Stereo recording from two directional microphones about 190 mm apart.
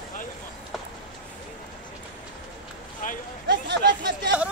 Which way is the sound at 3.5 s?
65° right (ahead or behind).